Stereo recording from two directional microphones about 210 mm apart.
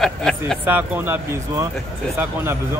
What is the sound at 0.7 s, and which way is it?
Speech, 10° right (ahead or behind).